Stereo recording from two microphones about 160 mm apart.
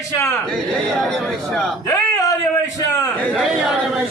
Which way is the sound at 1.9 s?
20° left (ahead or behind).